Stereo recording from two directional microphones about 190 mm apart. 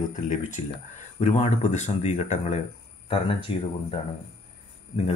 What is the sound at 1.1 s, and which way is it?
Speech, 35° left (ahead or behind).